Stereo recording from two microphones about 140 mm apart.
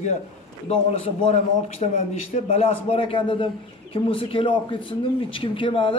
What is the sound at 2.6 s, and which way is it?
A man's voice, 40° left (ahead or behind).